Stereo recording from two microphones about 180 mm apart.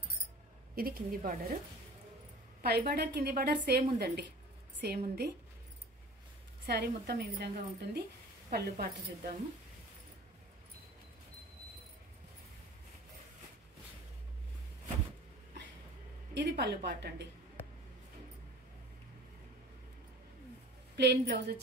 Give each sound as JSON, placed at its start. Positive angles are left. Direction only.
{"t": 0.7, "sound": "a woman's voice", "side_deg": -55}
{"t": 2.6, "sound": "a woman's voice", "side_deg": -65}
{"t": 6.6, "sound": "a woman's voice", "side_deg": -65}
{"t": 16.3, "sound": "a woman's voice", "side_deg": -65}
{"t": 20.9, "sound": "a woman's voice", "side_deg": -65}